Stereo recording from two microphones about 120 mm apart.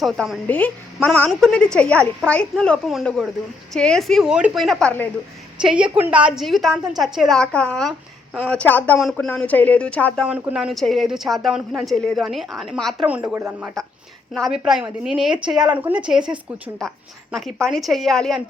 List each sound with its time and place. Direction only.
0.0 s speech: centre (ahead or behind)
0.4 s speech: 10° left (ahead or behind); by 4.6 s 10° right (ahead or behind)
4.6 s speech: 5° left (ahead or behind)
5.5 s a woman's voice: 10° right (ahead or behind)
6.4 s speech: centre (ahead or behind)
10.2 s speech: 5° right (ahead or behind)
13.1 s a woman's voice: 15° right (ahead or behind)
13.8 s a woman's voice: 5° left (ahead or behind)